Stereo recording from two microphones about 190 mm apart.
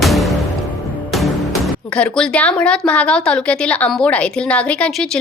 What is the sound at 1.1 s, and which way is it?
A woman's voice, centre (ahead or behind).